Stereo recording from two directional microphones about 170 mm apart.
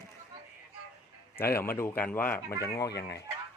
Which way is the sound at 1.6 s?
15° left (ahead or behind).